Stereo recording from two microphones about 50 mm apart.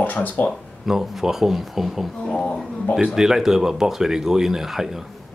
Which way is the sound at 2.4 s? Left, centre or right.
Centre.